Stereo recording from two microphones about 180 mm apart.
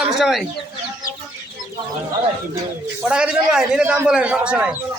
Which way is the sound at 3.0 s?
5° right (ahead or behind).